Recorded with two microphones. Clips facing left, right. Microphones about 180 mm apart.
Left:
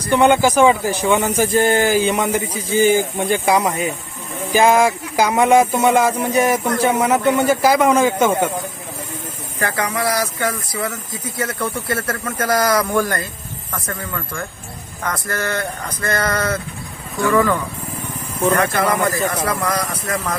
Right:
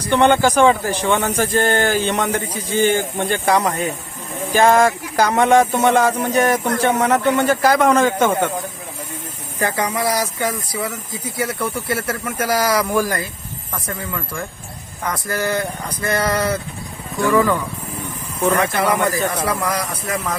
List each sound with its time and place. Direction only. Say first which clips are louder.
0.1 s speech: left 1 dB; 5° left (ahead or behind)
9.6 s speech: right 1 dB; 15° right (ahead or behind)
18.4 s speech: even; centre (ahead or behind)